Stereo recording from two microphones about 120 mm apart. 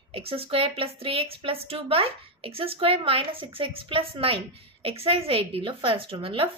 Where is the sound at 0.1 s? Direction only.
55° right (ahead or behind).